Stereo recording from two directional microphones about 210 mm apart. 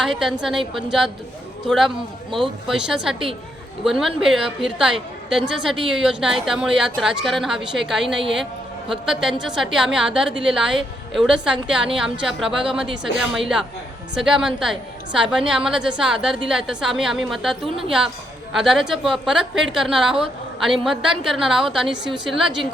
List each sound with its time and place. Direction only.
0.0 s a woman's voice: centre (ahead or behind)